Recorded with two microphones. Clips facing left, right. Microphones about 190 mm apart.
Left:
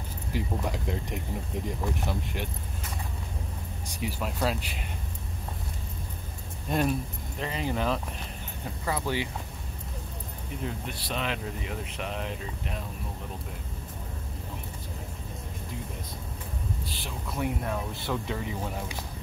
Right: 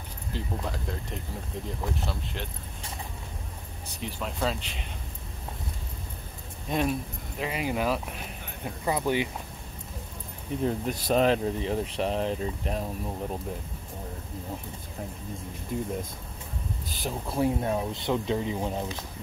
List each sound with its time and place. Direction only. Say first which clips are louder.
0.3 s speech: left 2 dB; 15° left (ahead or behind)
3.9 s speech: left 2 dB; 5° left (ahead or behind)
6.7 s speech: even; centre (ahead or behind)
8.8 s speech: right 4 dB; 20° right (ahead or behind)
10.6 s speech: right 8 dB; 45° right (ahead or behind)
15.7 s speech: right 9 dB; 50° right (ahead or behind)
16.9 s speech: right 5 dB; 40° right (ahead or behind)